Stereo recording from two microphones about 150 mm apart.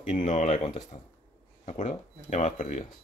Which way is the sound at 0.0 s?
55° left (ahead or behind).